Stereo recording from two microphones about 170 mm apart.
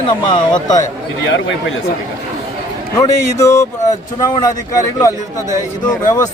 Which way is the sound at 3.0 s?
20° left (ahead or behind).